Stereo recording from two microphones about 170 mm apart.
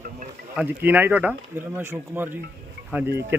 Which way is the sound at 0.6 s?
10° right (ahead or behind).